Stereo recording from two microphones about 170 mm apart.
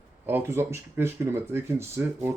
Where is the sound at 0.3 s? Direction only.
15° right (ahead or behind).